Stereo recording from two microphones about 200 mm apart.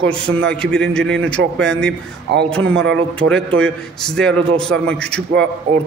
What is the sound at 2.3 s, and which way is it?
Speech, 55° right (ahead or behind).